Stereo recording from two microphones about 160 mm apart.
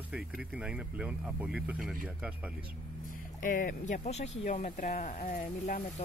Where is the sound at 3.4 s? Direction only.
60° left (ahead or behind).